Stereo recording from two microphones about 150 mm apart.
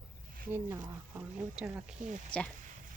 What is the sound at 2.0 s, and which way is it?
Speech, 55° right (ahead or behind).